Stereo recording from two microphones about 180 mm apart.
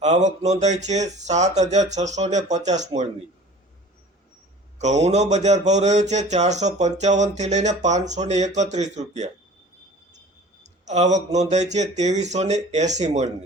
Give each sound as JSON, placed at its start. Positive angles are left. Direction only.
{"t": 0.0, "sound": "speech", "side_deg": -40}
{"t": 4.8, "sound": "speech", "side_deg": -40}
{"t": 10.6, "sound": "speech", "side_deg": -40}